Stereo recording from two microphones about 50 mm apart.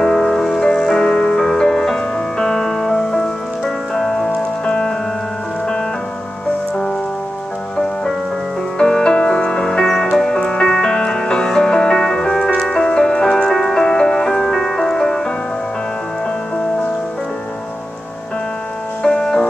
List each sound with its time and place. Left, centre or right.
0.0 s music: centre
8.7 s music: centre
19.0 s music: centre